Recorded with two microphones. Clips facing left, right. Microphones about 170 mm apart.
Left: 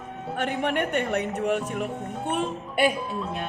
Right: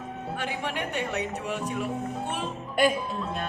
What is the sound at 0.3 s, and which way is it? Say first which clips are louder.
Speech: left 7 dB; 55° left (ahead or behind).